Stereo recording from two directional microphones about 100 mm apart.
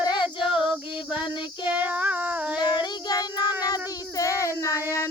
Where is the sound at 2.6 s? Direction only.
45° left (ahead or behind).